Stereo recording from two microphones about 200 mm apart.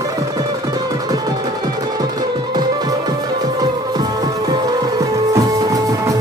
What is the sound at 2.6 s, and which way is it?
Music, 20° right (ahead or behind).